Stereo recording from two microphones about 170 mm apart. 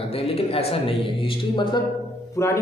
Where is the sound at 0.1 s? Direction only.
35° left (ahead or behind).